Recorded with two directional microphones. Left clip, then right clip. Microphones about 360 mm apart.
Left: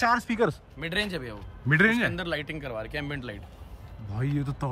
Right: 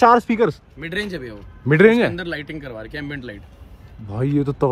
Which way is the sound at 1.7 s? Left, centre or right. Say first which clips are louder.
Right 9 dB; centre.